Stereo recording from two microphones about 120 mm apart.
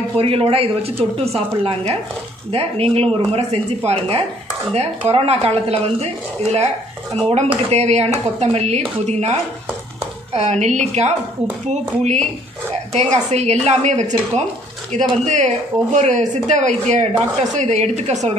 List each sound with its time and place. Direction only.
0.2 s speech: 55° right (ahead or behind); by 18.3 s 70° right (ahead or behind)